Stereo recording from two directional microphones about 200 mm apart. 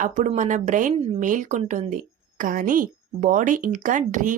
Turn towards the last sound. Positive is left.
turn(degrees=-40)  # may be behind; listen again after turning